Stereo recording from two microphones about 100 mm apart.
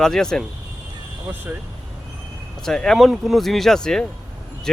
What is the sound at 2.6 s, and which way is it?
Speech, 5° left (ahead or behind).